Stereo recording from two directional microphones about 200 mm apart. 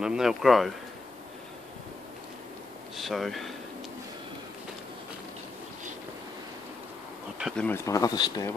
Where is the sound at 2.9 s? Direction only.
Centre (ahead or behind).